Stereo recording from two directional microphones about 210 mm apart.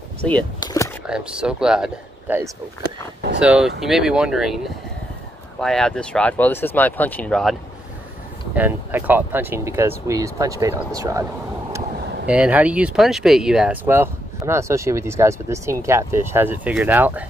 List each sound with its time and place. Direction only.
0.6 s a sound: 15° left (ahead or behind)
1.0 s speech: 5° right (ahead or behind)
8.5 s speech: 10° right (ahead or behind)
12.3 s speech: 5° right (ahead or behind)